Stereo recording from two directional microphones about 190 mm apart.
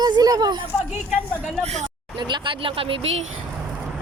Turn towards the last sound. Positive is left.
turn(degrees=-30)  # may be behind; listen again after turning